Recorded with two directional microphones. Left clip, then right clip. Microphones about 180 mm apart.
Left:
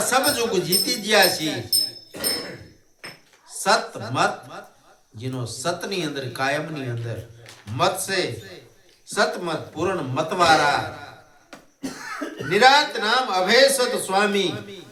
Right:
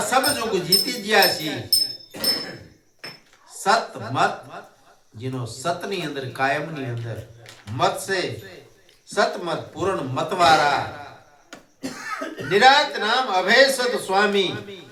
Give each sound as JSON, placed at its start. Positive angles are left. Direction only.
{"t": 0.1, "sound": "speech", "side_deg": 15}
{"t": 3.6, "sound": "speech", "side_deg": 15}
{"t": 12.5, "sound": "speech", "side_deg": 15}